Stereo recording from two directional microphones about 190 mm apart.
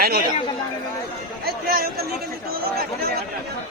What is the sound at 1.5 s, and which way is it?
Speech, 55° right (ahead or behind).